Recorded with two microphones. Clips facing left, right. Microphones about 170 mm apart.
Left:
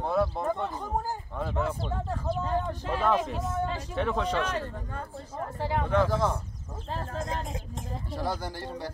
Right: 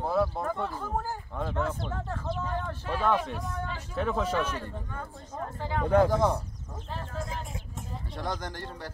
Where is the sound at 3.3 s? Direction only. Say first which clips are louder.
Left 5 dB; 20° left (ahead or behind).